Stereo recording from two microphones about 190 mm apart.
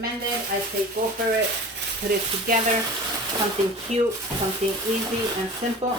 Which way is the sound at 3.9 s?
35° right (ahead or behind).